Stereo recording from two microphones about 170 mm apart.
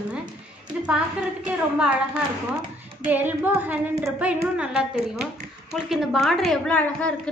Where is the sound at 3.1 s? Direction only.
10° right (ahead or behind); by 7.1 s 5° left (ahead or behind).